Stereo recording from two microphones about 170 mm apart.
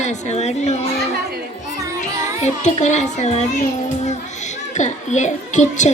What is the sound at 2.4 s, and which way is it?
A child's voice, 45° left (ahead or behind).